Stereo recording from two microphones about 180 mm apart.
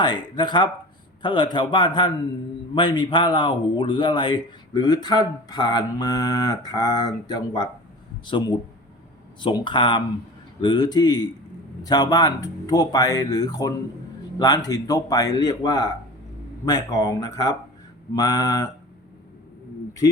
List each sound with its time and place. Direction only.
0.0 s speech: 25° left (ahead or behind)